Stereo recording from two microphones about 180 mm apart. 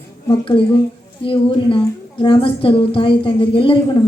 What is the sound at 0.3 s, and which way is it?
A woman's voice, 30° left (ahead or behind).